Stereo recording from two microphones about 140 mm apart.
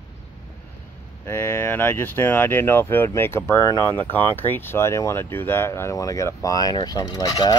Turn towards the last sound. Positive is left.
turn(degrees=30)  # may be behind; listen again after turning